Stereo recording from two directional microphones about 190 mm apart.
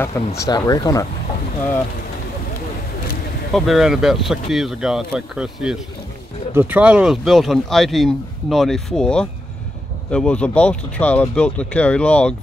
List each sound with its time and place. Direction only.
0.2 s speech: 15° left (ahead or behind)
3.5 s speech: centre (ahead or behind)